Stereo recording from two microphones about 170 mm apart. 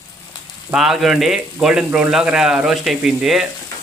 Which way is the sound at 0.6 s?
5° right (ahead or behind).